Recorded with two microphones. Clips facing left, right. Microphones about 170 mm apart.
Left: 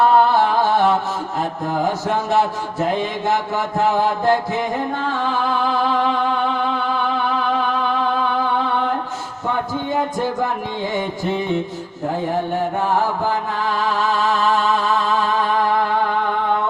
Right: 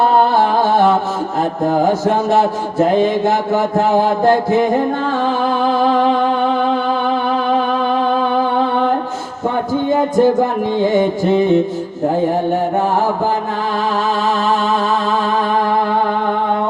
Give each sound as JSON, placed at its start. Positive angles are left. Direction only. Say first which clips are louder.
{"t": 0.0, "sound": "music", "louder": "right 2 dB", "side_deg": -35}
{"t": 1.9, "sound": "a man's voice", "louder": "right 6 dB", "side_deg": -40}
{"t": 5.2, "sound": "music", "louder": "right 4 dB", "side_deg": -35}
{"t": 10.2, "sound": "a man's voice", "louder": "right 9 dB", "side_deg": -45}